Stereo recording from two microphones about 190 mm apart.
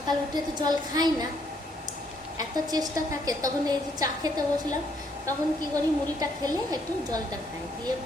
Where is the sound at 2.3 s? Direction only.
20° right (ahead or behind).